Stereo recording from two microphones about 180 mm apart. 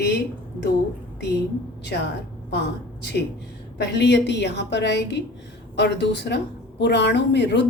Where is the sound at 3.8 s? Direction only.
75° left (ahead or behind).